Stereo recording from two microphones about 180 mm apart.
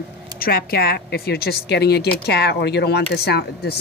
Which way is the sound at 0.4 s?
55° left (ahead or behind).